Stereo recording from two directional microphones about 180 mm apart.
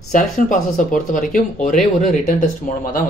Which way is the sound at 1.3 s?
45° left (ahead or behind).